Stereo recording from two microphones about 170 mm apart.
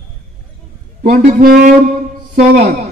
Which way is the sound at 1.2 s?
55° right (ahead or behind).